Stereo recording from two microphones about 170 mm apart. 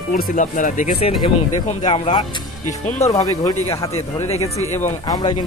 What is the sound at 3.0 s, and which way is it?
Speech, 20° left (ahead or behind).